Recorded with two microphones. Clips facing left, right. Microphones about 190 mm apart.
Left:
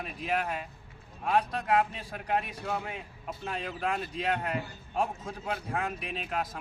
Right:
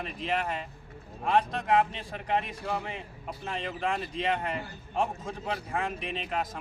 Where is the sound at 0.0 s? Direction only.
5° left (ahead or behind).